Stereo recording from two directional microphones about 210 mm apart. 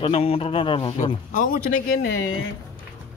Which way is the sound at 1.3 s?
40° left (ahead or behind).